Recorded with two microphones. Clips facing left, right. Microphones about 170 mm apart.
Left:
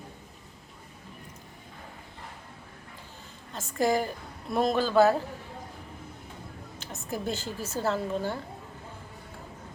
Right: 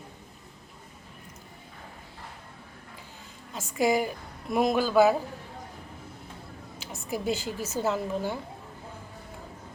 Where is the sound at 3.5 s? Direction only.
10° right (ahead or behind).